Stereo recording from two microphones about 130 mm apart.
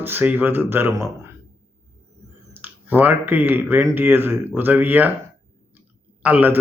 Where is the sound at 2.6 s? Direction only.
15° right (ahead or behind).